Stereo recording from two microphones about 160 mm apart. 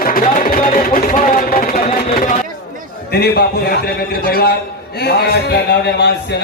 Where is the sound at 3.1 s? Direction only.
80° left.